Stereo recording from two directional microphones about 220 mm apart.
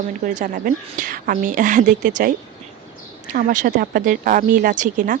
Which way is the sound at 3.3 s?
35° right (ahead or behind).